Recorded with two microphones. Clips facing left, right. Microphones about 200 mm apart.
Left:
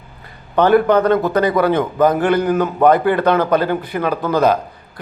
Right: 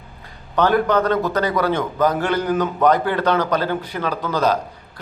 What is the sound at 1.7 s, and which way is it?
Speech, 55° left (ahead or behind).